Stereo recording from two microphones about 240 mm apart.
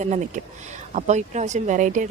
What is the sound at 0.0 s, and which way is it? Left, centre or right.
Speech, right.